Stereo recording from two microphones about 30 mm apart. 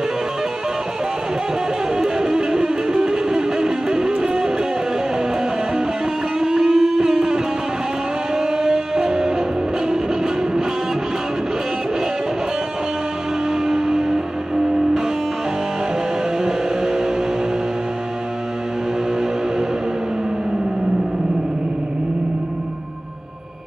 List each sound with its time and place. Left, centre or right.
2.0 s music: right
6.4 s music: centre
13.7 s music: centre
16.4 s music: right